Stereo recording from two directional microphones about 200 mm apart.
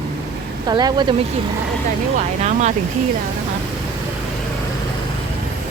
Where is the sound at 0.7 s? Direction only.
20° right (ahead or behind).